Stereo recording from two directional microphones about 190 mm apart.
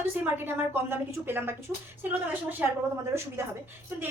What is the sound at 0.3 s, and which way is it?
A woman's voice, 10° right (ahead or behind).